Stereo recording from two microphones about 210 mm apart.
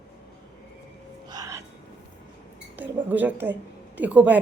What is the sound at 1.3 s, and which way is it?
Music, 15° right (ahead or behind).